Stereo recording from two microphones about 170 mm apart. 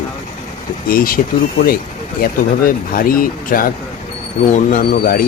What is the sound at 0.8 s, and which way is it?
Speech, 60° left (ahead or behind).